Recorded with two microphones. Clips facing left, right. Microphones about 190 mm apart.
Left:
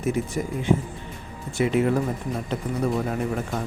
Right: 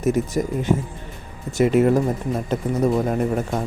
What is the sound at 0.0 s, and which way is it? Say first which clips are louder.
Speech: right 5 dB; 40° right (ahead or behind).